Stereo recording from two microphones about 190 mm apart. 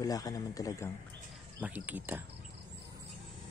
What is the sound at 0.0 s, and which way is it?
Speech, 20° left (ahead or behind).